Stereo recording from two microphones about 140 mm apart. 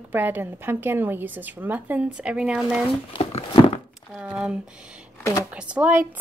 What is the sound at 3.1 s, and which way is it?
Speech, 40° left (ahead or behind).